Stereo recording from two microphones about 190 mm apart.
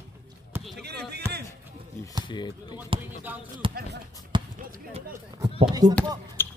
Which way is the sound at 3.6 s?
30° right (ahead or behind).